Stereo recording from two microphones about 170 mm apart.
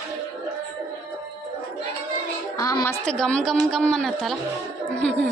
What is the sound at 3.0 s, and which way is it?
A man's voice, 5° left (ahead or behind).